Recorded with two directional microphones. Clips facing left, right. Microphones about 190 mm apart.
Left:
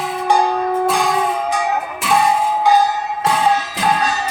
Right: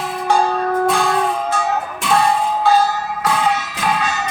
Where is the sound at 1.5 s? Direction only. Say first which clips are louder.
Even; 15° left (ahead or behind).